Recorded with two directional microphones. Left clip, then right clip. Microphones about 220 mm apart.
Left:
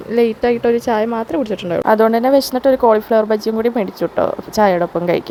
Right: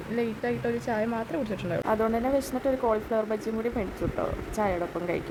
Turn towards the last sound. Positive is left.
turn(degrees=40)  # may be behind; listen again after turning